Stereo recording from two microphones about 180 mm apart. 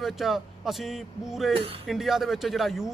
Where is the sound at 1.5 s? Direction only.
30° right (ahead or behind).